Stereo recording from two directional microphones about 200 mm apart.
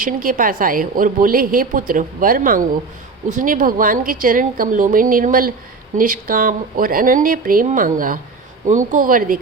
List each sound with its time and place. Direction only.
0.0 s a woman's voice: 45° right (ahead or behind)